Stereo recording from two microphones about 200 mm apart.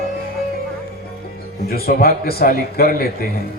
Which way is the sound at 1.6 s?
50° left (ahead or behind).